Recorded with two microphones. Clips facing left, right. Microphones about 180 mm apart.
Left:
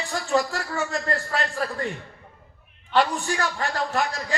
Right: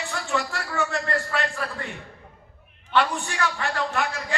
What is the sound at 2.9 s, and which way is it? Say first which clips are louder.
A man's voice: left 2 dB; 40° left (ahead or behind).